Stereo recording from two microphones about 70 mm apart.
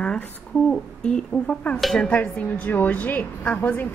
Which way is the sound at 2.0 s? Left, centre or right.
Left.